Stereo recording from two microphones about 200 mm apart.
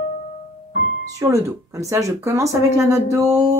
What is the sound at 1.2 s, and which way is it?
Speech, 15° right (ahead or behind).